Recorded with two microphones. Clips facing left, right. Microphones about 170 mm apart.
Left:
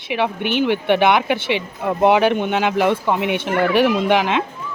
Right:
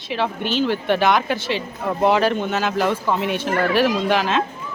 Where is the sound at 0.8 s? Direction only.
20° left (ahead or behind).